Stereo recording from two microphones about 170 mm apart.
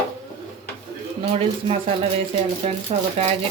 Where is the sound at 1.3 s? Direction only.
35° right (ahead or behind).